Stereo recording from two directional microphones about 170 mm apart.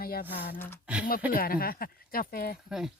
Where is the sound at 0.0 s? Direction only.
60° left (ahead or behind).